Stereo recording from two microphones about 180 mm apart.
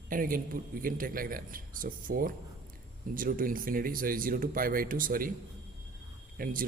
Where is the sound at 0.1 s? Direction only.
50° right (ahead or behind).